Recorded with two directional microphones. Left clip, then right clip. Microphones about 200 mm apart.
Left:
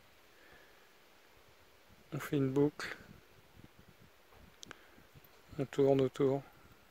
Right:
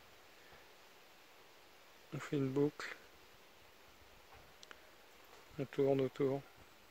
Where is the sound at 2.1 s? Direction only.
45° left (ahead or behind).